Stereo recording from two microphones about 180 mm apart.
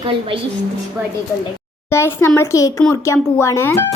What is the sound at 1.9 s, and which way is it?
Speech, 15° left (ahead or behind).